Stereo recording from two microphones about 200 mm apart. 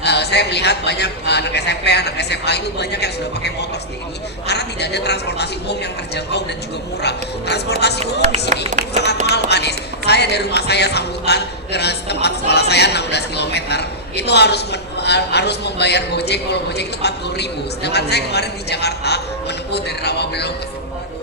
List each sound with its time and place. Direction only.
0.0 s speech: 55° left (ahead or behind)
7.0 s speech: 55° left (ahead or behind)
8.5 s music: 40° right (ahead or behind)
9.3 s speech: 55° left (ahead or behind)